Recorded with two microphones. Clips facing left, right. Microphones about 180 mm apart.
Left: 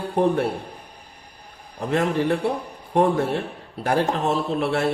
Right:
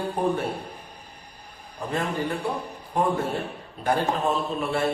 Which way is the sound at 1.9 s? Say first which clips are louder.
Left 6 dB; 80° left.